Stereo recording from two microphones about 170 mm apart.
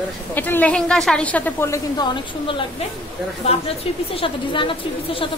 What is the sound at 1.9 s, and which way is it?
A woman's voice, 25° left (ahead or behind).